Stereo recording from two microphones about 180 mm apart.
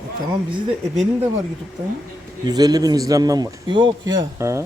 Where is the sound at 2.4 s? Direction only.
20° right (ahead or behind).